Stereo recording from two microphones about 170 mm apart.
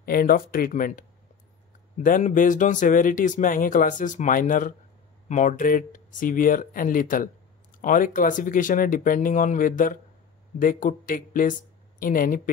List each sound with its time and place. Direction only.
0.0 s speech: 60° left (ahead or behind)
2.0 s speech: 50° left (ahead or behind)